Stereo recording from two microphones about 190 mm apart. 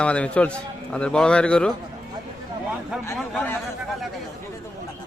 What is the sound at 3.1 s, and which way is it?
Speech, 5° left (ahead or behind).